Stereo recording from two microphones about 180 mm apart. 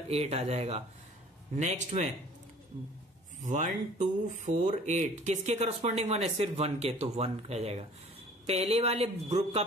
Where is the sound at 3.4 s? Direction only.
45° right (ahead or behind).